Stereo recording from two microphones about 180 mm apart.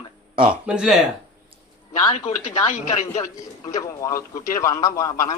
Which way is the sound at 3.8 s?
15° left (ahead or behind).